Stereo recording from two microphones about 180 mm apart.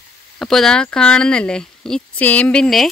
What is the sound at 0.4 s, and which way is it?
Speech, centre (ahead or behind).